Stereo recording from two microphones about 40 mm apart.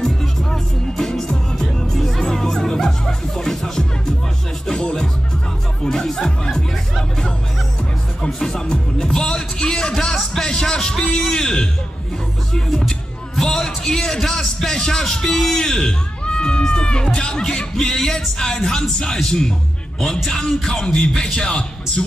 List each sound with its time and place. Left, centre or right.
0.0 s music: centre
4.6 s music: left
6.0 s music: centre
8.4 s music: centre
11.3 s a sound: left
13.4 s a sound: centre
19.1 s speech: centre